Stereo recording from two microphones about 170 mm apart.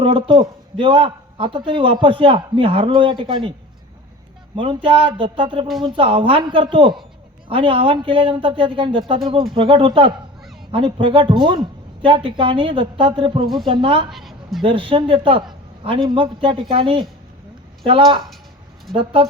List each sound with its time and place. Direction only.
0.0 s a man's voice: 30° right (ahead or behind)
4.5 s a man's voice: 30° right (ahead or behind)
14.1 s a sound: centre (ahead or behind)
14.6 s a man's voice: 30° right (ahead or behind)